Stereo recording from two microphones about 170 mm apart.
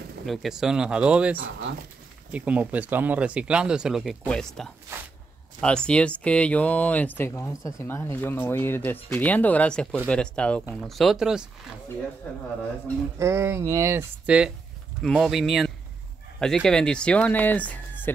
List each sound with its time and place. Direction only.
0.3 s speech: centre (ahead or behind)
12.2 s speech: 10° left (ahead or behind)
13.2 s speech: 15° right (ahead or behind); by 18.1 s 10° left (ahead or behind)